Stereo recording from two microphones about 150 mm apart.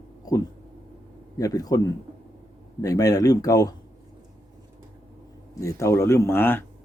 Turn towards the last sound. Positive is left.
turn(degrees=15)  # may be behind; listen again after turning